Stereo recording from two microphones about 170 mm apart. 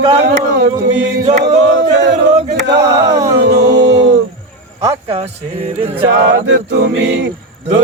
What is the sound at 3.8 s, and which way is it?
Music, 90° right.